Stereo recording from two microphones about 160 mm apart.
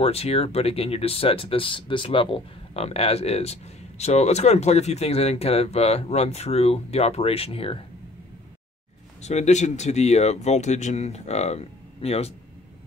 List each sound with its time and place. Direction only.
0.0 s speech: 40° left (ahead or behind)
9.2 s speech: 45° left (ahead or behind)